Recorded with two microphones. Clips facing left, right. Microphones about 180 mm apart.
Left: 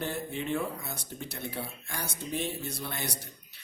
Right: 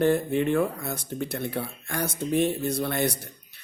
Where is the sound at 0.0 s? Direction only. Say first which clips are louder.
Right 12 dB; 60° right (ahead or behind).